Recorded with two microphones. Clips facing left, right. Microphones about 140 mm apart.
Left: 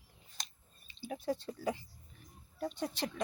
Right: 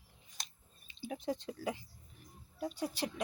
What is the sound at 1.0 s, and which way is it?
A woman's voice, 15° right (ahead or behind).